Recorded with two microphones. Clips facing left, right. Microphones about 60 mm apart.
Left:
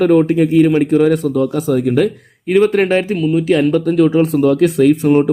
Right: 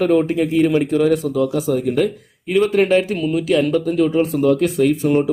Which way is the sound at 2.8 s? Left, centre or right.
Left.